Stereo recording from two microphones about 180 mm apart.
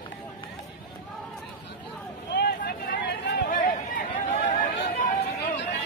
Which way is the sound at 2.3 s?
65° left (ahead or behind).